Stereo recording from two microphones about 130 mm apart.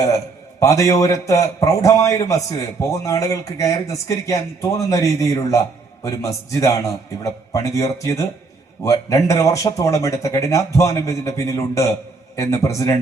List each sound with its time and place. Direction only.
0.6 s a man's voice: 25° left (ahead or behind)